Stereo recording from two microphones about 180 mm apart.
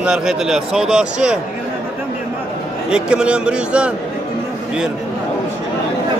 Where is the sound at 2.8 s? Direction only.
5° right (ahead or behind).